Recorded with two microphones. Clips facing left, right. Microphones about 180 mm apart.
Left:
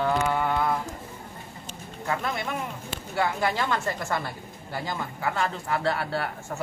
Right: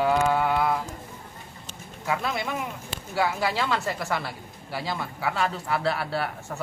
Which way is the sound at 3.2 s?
10° right (ahead or behind).